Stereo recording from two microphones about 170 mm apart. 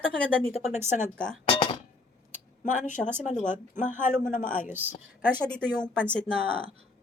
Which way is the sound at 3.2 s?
45° left (ahead or behind).